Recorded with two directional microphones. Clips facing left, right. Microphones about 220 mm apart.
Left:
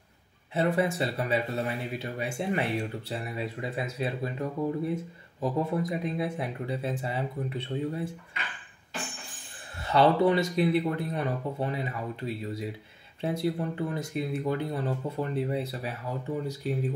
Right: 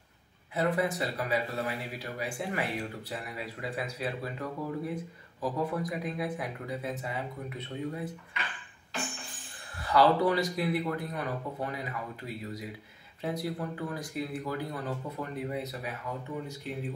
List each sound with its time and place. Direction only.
0.6 s speech: 25° left (ahead or behind)
9.8 s speech: 25° left (ahead or behind)